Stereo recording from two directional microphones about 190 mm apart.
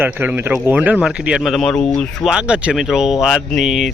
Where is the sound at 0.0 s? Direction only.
10° right (ahead or behind).